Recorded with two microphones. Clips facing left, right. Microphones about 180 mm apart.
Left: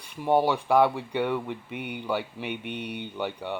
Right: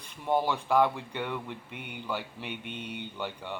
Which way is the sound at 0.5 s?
15° left (ahead or behind).